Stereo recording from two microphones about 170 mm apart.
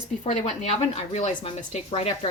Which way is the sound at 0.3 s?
40° left (ahead or behind).